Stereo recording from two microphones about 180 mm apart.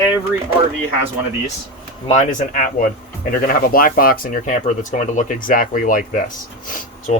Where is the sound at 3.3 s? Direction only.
55° left (ahead or behind).